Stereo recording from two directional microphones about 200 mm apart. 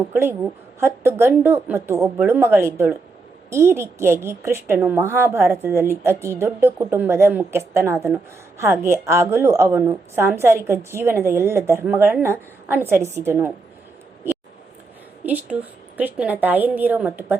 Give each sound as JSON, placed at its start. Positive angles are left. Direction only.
{"t": 0.1, "sound": "a woman's voice", "side_deg": -10}
{"t": 14.3, "sound": "a sound", "side_deg": -10}
{"t": 15.2, "sound": "a woman's voice", "side_deg": -10}